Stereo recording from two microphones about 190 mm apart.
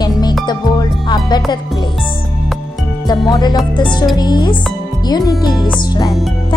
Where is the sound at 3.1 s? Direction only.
20° left (ahead or behind).